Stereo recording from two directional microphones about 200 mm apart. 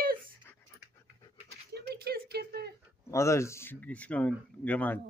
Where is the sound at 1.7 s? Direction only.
50° right (ahead or behind).